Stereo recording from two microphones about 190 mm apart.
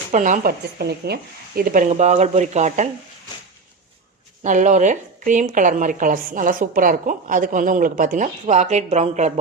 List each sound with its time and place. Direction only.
0.1 s a woman's voice: 40° right (ahead or behind)
4.4 s a woman's voice: 40° right (ahead or behind)